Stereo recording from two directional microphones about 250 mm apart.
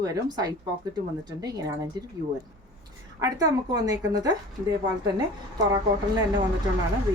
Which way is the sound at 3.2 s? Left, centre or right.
Centre.